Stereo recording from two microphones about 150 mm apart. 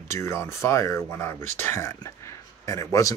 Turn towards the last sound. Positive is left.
turn(degrees=20)  # may be behind; listen again after turning